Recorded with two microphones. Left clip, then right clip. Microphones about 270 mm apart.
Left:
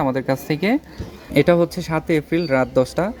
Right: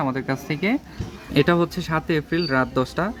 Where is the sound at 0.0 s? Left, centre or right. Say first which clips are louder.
Left 5 dB; centre.